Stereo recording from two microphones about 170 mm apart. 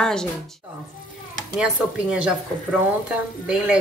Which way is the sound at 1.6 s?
5° right (ahead or behind).